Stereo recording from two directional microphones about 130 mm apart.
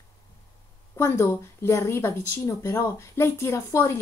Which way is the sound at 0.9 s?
20° left (ahead or behind).